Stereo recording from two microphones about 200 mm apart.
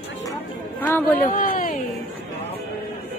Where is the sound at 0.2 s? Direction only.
10° left (ahead or behind).